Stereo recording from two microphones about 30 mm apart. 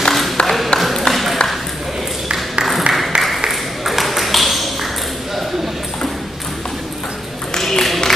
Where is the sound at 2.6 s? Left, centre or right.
Centre.